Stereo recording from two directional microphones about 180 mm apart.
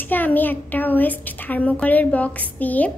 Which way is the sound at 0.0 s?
10° left (ahead or behind).